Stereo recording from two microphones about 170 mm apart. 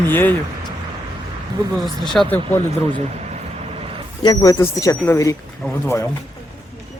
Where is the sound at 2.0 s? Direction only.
5° left (ahead or behind).